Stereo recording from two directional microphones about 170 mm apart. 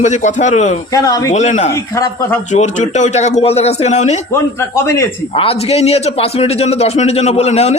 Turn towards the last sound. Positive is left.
turn(degrees=40)  # may be behind; listen again after turning